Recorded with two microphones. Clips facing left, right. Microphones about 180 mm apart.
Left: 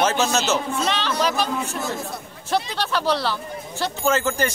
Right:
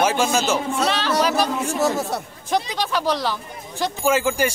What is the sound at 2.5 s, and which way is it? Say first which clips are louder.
Speech: right 1 dB; 10° right (ahead or behind).